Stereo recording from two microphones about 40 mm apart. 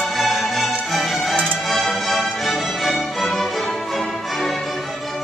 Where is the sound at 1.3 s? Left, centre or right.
Right.